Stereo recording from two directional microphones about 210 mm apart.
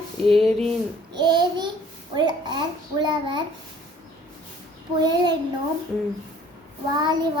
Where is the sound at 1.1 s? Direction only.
20° right (ahead or behind).